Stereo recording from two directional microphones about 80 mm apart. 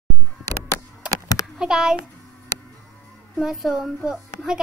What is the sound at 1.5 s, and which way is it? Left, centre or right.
Speech, centre.